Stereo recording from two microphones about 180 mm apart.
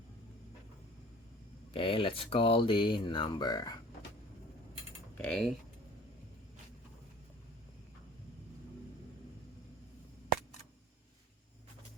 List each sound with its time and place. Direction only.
1.7 s speech: 30° left (ahead or behind)
5.1 s speech: 5° left (ahead or behind)